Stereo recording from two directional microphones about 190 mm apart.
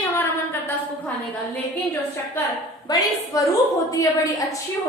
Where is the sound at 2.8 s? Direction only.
20° left (ahead or behind).